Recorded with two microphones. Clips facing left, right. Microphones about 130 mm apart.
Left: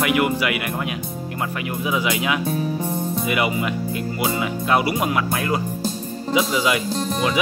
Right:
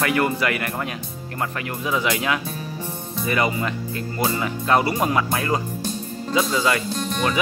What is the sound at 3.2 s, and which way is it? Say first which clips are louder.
Speech: right 2 dB; 10° left (ahead or behind).